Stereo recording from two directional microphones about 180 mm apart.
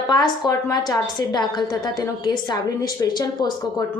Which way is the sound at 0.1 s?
25° left (ahead or behind).